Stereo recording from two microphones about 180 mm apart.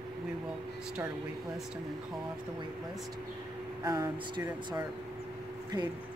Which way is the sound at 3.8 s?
20° right (ahead or behind).